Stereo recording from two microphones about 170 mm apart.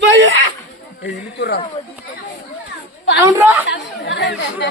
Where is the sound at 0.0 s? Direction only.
90° right.